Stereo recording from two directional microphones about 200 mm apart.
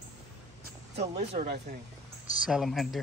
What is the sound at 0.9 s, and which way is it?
Speech, 35° right (ahead or behind).